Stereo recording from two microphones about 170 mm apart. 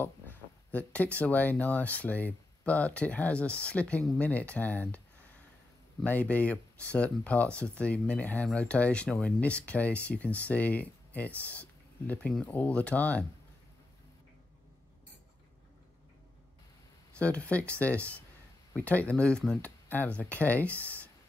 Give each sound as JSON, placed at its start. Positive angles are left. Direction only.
{"t": 0.0, "sound": "speech", "side_deg": 10}
{"t": 6.0, "sound": "speech", "side_deg": 10}
{"t": 17.2, "sound": "speech", "side_deg": 10}